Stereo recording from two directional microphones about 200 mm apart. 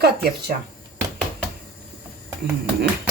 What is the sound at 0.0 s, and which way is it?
Speech, 55° right (ahead or behind).